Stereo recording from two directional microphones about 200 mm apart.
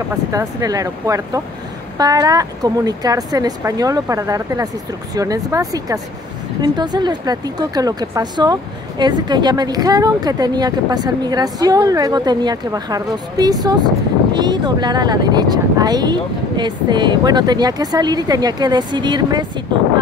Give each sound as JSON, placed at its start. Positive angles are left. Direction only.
{"t": 0.3, "sound": "speech", "side_deg": -15}